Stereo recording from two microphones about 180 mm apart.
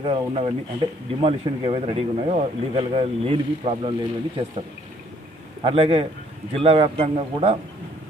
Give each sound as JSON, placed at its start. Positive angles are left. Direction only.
{"t": 0.0, "sound": "speech", "side_deg": -30}
{"t": 5.6, "sound": "speech", "side_deg": -35}